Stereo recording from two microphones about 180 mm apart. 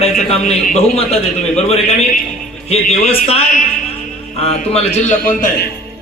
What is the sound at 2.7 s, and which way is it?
A man's voice, 35° left (ahead or behind).